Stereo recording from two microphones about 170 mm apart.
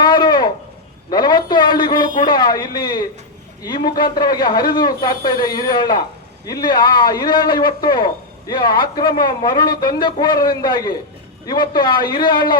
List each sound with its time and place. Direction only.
0.0 s a sound: 25° left (ahead or behind)
1.1 s a man's voice: 25° left (ahead or behind)
4.1 s a man's voice: 25° left (ahead or behind)